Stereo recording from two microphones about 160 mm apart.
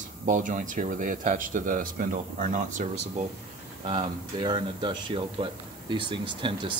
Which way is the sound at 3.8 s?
30° right (ahead or behind).